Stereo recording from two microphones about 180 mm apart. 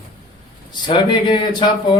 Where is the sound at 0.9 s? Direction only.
25° left (ahead or behind).